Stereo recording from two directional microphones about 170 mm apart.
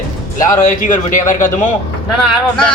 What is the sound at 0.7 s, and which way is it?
Speech, 50° left (ahead or behind).